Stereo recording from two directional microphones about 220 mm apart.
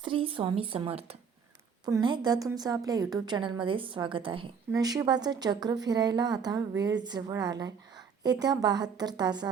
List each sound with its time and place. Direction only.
0.0 s a woman's voice: 25° right (ahead or behind)